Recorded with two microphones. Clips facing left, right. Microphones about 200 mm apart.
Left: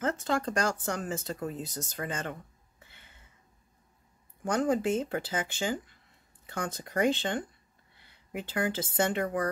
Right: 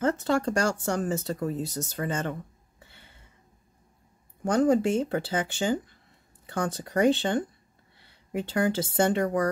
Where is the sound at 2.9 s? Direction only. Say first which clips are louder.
Right 4 dB; 30° right (ahead or behind).